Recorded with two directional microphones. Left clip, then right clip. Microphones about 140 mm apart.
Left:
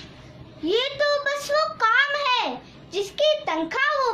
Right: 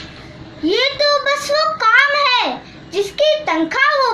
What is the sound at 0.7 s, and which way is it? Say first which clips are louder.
Child singing: right 7 dB; 30° left (ahead or behind).